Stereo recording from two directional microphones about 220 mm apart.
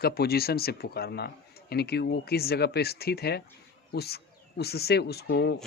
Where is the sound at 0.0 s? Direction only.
45° left (ahead or behind).